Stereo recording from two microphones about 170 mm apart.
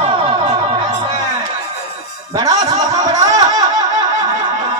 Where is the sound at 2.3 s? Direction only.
20° right (ahead or behind).